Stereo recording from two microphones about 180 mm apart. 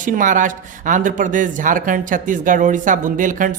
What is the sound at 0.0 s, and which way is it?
Speech, 45° right (ahead or behind).